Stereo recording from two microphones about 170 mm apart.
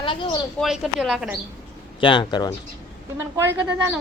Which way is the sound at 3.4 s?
10° right (ahead or behind).